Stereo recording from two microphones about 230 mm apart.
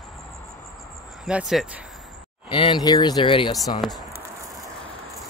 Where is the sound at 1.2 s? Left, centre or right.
Centre.